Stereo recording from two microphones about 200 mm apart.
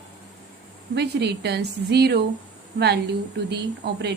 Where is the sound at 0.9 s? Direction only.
55° right (ahead or behind).